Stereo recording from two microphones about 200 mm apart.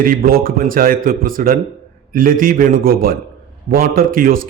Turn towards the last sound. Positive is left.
turn(degrees=-45)  # may be behind; listen again after turning